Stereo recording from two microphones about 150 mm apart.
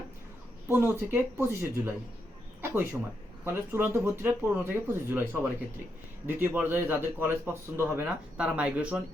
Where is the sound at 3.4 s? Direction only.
15° right (ahead or behind).